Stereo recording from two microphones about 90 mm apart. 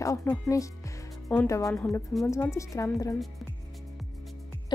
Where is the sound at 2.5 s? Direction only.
35° left (ahead or behind).